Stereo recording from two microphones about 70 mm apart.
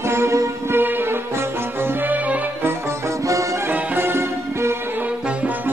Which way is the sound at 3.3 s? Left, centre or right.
Right.